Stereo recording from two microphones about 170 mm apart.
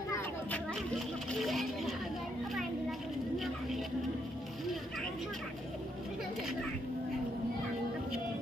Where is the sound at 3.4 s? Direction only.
Centre (ahead or behind).